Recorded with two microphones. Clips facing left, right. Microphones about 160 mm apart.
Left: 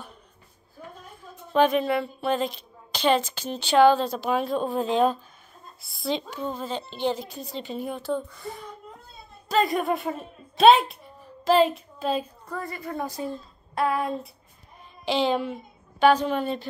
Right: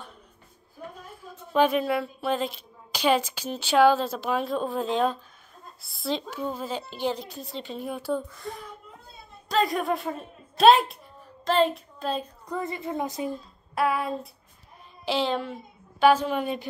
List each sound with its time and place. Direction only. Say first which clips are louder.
1.2 s speech: left 1 dB; 5° right (ahead or behind)
11.4 s a sound: left 3 dB; 5° left (ahead or behind)
12.4 s a woman's voice: right 2 dB; 20° right (ahead or behind)
13.7 s a woman's voice: left 1 dB; 5° right (ahead or behind)